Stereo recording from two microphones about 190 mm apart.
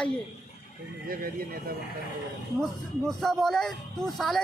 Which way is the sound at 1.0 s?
50° right (ahead or behind).